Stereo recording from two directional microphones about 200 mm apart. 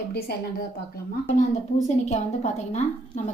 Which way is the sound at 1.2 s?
35° left (ahead or behind).